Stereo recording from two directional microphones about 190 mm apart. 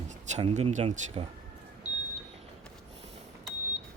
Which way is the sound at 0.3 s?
35° right (ahead or behind).